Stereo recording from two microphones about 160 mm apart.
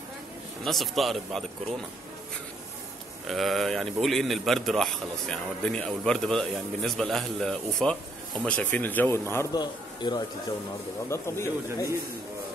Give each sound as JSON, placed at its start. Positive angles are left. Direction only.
{"t": 0.7, "sound": "a man's voice", "side_deg": 0}
{"t": 3.3, "sound": "a man's voice", "side_deg": 0}
{"t": 9.5, "sound": "a man's voice", "side_deg": 25}